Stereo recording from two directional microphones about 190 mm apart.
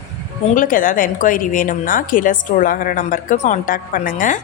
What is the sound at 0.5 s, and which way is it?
Speech, 45° left (ahead or behind).